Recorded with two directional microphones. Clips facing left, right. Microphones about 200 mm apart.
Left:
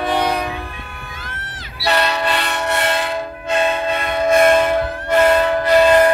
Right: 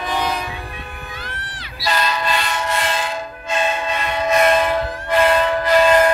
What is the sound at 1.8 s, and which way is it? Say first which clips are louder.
Train: left 3 dB; 65° left (ahead or behind).